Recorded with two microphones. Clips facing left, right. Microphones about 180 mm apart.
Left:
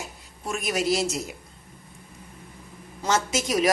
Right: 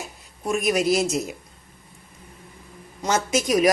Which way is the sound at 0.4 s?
20° right (ahead or behind).